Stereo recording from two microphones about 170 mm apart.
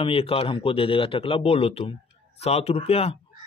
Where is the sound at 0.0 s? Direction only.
35° left (ahead or behind).